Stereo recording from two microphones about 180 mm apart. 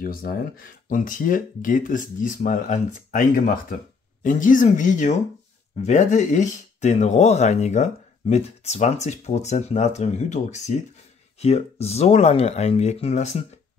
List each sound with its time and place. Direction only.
0.0 s speech: 55° left (ahead or behind); by 13.4 s 40° left (ahead or behind)